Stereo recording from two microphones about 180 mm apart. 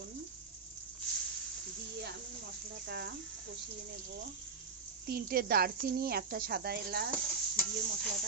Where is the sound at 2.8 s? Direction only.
65° right (ahead or behind).